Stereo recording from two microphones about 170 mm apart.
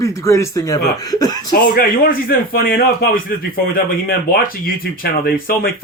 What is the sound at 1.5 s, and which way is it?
Speech, 60° left (ahead or behind).